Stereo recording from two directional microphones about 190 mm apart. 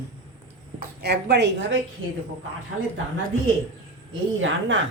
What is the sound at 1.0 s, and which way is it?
Speech, 60° right (ahead or behind).